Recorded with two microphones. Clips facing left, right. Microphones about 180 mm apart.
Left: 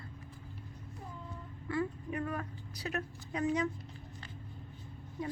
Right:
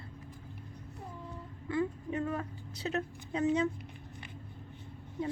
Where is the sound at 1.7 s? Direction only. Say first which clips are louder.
Right 2 dB; 20° right (ahead or behind).